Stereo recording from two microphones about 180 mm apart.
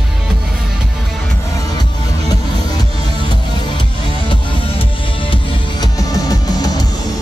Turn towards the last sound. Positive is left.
turn(degrees=20)  # may be behind; listen again after turning